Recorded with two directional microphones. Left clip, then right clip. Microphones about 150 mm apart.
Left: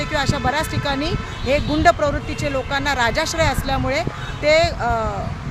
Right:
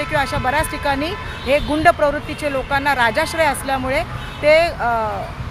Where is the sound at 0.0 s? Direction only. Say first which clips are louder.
Right 2 dB; 10° left (ahead or behind).